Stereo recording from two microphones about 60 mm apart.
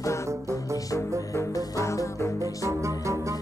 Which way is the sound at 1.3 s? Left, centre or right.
Left.